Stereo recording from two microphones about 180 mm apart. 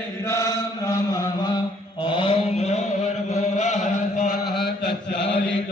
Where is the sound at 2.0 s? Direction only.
30° left (ahead or behind).